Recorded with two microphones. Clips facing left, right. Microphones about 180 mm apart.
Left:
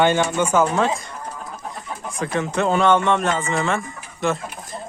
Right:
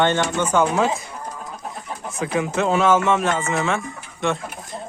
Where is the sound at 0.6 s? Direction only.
5° right (ahead or behind).